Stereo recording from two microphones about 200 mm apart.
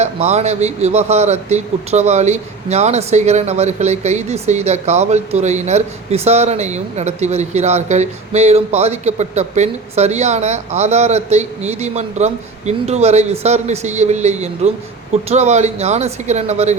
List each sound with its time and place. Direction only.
0.0 s speech: 35° right (ahead or behind)